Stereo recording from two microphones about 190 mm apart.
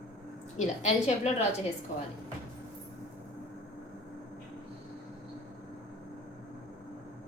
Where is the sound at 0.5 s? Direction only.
35° left (ahead or behind).